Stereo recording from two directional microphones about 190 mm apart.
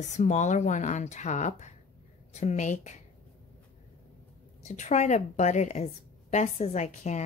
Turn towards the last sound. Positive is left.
turn(degrees=35)  # may be behind; listen again after turning